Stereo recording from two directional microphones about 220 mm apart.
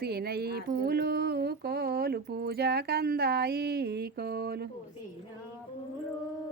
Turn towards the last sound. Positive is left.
turn(degrees=-45)  # may be behind; listen again after turning